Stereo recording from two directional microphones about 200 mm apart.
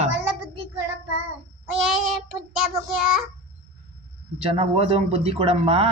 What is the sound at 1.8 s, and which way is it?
Child singing, centre (ahead or behind).